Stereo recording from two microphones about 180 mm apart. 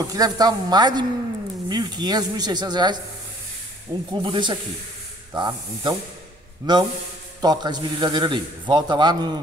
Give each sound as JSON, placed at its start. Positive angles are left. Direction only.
{"t": 0.0, "sound": "a man's voice", "side_deg": -20}
{"t": 4.1, "sound": "a man's voice", "side_deg": -25}